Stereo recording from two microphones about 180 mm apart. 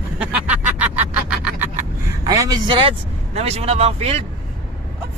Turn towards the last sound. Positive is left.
turn(degrees=-35)  # may be behind; listen again after turning